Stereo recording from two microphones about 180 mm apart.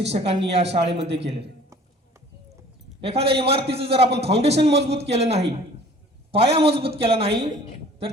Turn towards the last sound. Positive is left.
turn(degrees=-30)  # may be behind; listen again after turning